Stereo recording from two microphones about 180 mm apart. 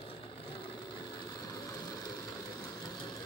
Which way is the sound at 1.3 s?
20° left (ahead or behind).